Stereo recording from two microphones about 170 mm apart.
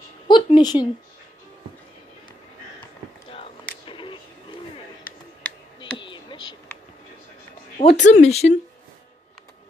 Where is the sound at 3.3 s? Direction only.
30° left (ahead or behind).